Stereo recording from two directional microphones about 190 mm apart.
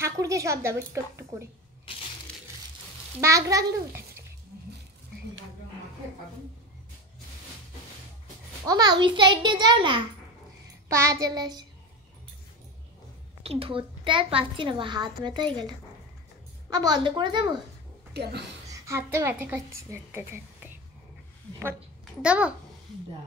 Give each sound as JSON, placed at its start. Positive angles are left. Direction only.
{"t": 0.0, "sound": "a woman's voice", "side_deg": -15}
{"t": 1.9, "sound": "crushing", "side_deg": 25}
{"t": 2.3, "sound": "crumpling", "side_deg": 5}
{"t": 3.2, "sound": "a woman's voice", "side_deg": -15}
{"t": 8.6, "sound": "a woman's voice", "side_deg": -20}
{"t": 13.4, "sound": "a woman's voice", "side_deg": -30}
{"t": 16.7, "sound": "a woman's voice", "side_deg": -20}
{"t": 18.1, "sound": "speech", "side_deg": -60}
{"t": 18.7, "sound": "a woman's voice", "side_deg": -15}
{"t": 22.2, "sound": "a woman's voice", "side_deg": -5}